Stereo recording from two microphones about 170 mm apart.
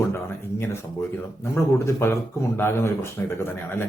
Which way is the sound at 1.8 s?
15° left (ahead or behind).